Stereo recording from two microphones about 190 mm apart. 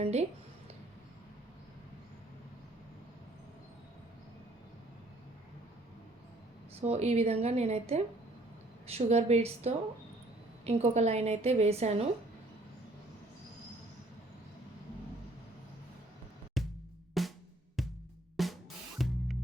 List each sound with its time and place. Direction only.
0.0 s a woman's voice: 35° right (ahead or behind)
6.8 s a woman's voice: 35° right (ahead or behind)
16.6 s music: centre (ahead or behind)
17.2 s drum: centre (ahead or behind)
17.8 s music: centre (ahead or behind)
18.4 s drum: centre (ahead or behind)
18.9 s music: centre (ahead or behind)